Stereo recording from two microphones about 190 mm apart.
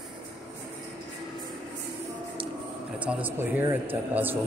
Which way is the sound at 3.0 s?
5° right (ahead or behind).